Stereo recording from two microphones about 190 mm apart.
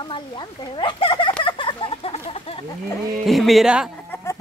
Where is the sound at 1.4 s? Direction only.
25° left (ahead or behind).